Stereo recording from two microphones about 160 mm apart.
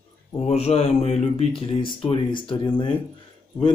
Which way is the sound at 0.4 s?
40° left (ahead or behind).